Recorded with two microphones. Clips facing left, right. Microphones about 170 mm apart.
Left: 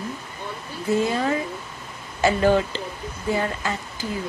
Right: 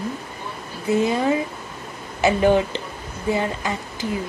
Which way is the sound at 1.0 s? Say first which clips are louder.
Right 3 dB; 15° right (ahead or behind).